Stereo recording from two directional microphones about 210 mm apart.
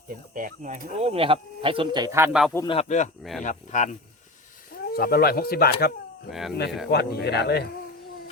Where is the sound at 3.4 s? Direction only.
35° left (ahead or behind).